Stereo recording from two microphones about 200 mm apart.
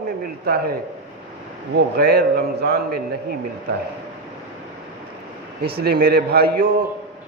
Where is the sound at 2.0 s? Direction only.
50° right (ahead or behind).